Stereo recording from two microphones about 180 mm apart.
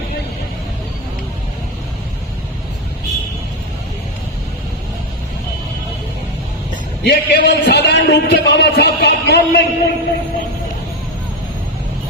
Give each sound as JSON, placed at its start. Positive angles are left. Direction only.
{"t": 7.0, "sound": "a man's voice", "side_deg": 70}